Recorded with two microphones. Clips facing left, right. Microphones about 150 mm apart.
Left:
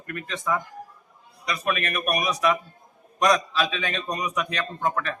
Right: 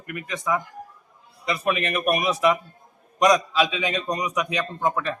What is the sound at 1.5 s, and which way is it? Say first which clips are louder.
A man's voice: right 3 dB; 20° right (ahead or behind).